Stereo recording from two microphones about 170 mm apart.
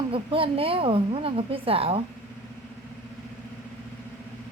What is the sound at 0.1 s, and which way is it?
A woman's voice, 35° right (ahead or behind).